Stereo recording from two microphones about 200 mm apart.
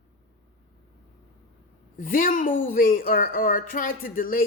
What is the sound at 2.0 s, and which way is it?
A woman's voice, 45° left (ahead or behind).